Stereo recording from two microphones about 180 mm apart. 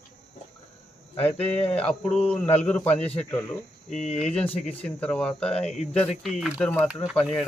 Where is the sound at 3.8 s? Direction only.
40° left (ahead or behind).